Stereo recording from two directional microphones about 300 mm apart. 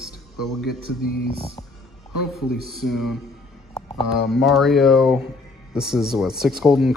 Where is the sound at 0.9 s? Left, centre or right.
Left.